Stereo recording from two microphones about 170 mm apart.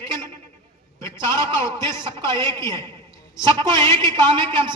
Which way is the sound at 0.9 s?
15° left (ahead or behind).